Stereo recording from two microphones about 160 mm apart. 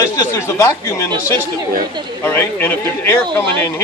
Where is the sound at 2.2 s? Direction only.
15° left (ahead or behind).